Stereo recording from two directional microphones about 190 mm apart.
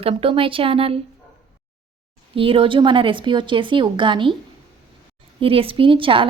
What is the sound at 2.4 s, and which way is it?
A woman's voice, 30° right (ahead or behind).